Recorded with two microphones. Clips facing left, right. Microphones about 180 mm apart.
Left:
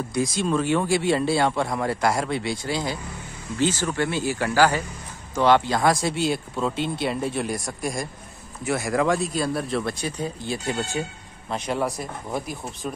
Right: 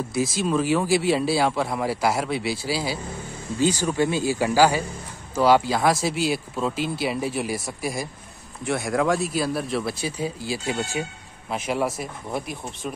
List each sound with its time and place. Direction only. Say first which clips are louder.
0.1 s speech: even; 5° right (ahead or behind)